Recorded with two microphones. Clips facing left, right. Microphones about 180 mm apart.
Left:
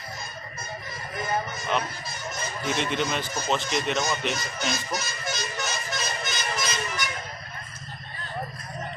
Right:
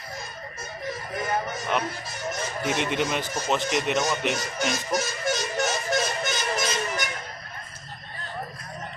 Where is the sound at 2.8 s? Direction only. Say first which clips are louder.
Even; 10° right (ahead or behind).